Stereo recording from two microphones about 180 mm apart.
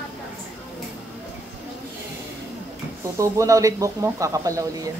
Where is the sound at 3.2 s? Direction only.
20° right (ahead or behind).